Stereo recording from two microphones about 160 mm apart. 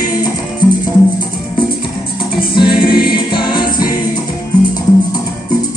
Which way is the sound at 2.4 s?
30° left (ahead or behind).